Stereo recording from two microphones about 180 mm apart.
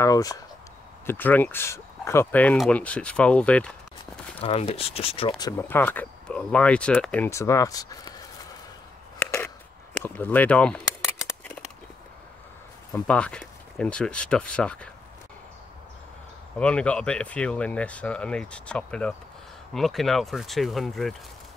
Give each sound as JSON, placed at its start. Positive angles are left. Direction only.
{"t": 0.0, "sound": "speech", "side_deg": 20}
{"t": 4.0, "sound": "speech", "side_deg": 30}
{"t": 5.6, "sound": "speech", "side_deg": 10}
{"t": 9.2, "sound": "a sound", "side_deg": 10}
{"t": 10.0, "sound": "speech", "side_deg": 10}
{"t": 12.9, "sound": "speech", "side_deg": 5}
{"t": 16.5, "sound": "speech", "side_deg": 5}